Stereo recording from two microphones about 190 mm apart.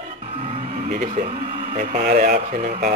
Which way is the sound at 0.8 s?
40° right (ahead or behind).